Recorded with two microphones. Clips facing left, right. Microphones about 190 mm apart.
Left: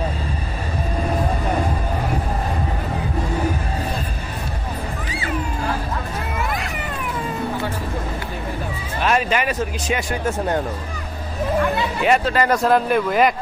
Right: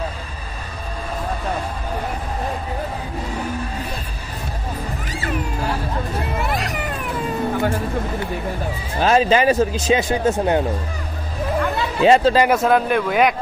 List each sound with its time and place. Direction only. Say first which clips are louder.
9.0 s speech: right 5 dB; 30° right (ahead or behind)
12.0 s speech: right 6 dB; 30° right (ahead or behind)
12.4 s speech: right 1 dB; centre (ahead or behind)